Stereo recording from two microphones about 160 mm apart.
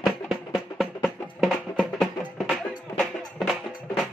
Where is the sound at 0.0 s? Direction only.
Centre (ahead or behind).